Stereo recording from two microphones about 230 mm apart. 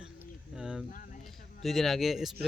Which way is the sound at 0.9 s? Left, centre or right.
Left.